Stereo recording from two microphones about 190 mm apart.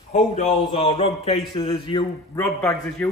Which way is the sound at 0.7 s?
25° left (ahead or behind).